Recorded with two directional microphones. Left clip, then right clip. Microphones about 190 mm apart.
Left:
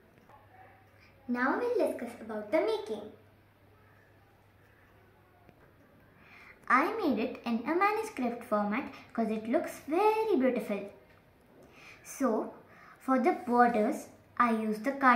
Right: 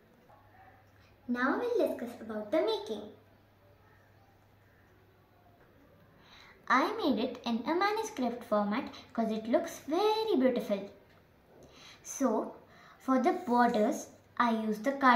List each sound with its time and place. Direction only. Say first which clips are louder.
1.3 s a woman's voice: left 1 dB; 10° right (ahead or behind)
6.6 s a woman's voice: left 1 dB; 15° right (ahead or behind)
11.7 s a sound: right 3 dB; 15° right (ahead or behind)
13.0 s a woman's voice: left 1 dB; 15° right (ahead or behind)